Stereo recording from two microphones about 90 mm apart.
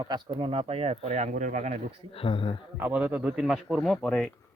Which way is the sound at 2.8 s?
20° right (ahead or behind).